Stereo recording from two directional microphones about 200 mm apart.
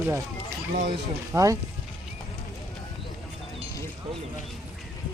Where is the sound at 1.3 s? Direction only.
15° right (ahead or behind).